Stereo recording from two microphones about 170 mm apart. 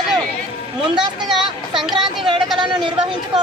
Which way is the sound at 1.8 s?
Centre (ahead or behind).